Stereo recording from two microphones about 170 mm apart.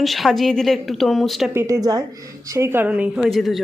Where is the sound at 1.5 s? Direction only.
15° right (ahead or behind); by 3.6 s centre (ahead or behind).